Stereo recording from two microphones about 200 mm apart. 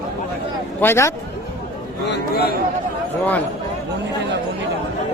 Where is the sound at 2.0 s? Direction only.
55° left (ahead or behind).